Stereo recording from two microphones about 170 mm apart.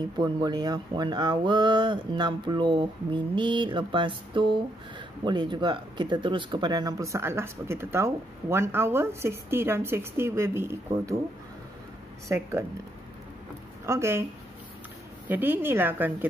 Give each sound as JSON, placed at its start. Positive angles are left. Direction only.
{"t": 0.0, "sound": "speech", "side_deg": -25}
{"t": 12.3, "sound": "speech", "side_deg": -15}
{"t": 13.8, "sound": "speech", "side_deg": -15}
{"t": 15.2, "sound": "speech", "side_deg": -10}